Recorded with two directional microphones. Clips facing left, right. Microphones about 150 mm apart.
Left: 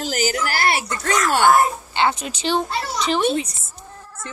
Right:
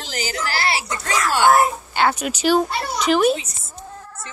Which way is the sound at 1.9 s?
20° left (ahead or behind).